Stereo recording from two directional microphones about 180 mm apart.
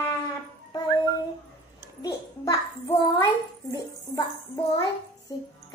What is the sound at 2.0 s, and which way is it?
Child singing, 20° left (ahead or behind).